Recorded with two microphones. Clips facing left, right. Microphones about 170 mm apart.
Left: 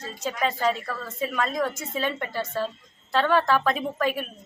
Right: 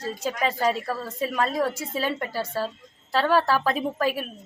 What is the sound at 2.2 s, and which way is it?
A woman's voice, 35° right (ahead or behind).